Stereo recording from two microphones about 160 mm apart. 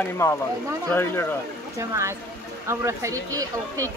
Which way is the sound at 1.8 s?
20° right (ahead or behind).